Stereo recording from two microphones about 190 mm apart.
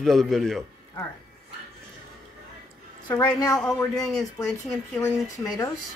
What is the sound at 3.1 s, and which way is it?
Speech, 20° left (ahead or behind).